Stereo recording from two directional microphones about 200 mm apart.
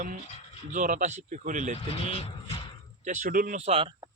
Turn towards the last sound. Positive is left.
turn(degrees=-30)  # may be behind; listen again after turning